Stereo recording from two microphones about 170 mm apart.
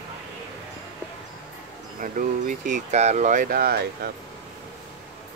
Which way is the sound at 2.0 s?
50° right (ahead or behind).